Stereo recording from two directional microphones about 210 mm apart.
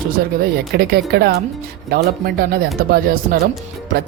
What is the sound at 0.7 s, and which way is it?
Speech, 50° right (ahead or behind).